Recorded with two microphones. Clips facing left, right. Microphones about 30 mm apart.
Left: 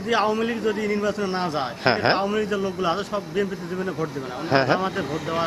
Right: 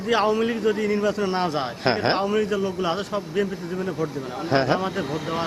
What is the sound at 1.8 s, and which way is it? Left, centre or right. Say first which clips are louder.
A man's voice: left 2 dB; centre.